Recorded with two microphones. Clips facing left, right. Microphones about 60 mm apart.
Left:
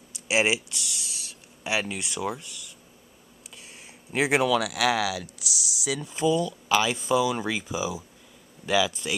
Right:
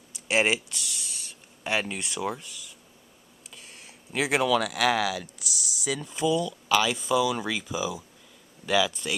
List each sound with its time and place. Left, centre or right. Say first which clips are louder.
0.1 s speech: even; centre
3.4 s a sound: left 1 dB; centre
4.1 s speech: left 2 dB; centre
4.5 s speech: even; centre